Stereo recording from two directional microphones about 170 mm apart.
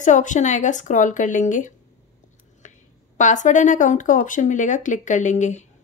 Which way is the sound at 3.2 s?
45° left (ahead or behind).